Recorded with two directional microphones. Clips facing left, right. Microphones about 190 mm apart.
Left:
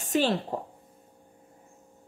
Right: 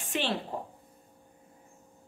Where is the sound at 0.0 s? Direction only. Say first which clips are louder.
Left 7 dB; 40° left (ahead or behind).